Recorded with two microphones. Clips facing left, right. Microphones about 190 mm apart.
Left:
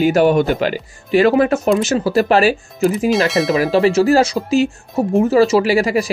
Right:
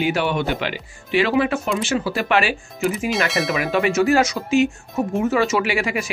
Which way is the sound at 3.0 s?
Centre (ahead or behind).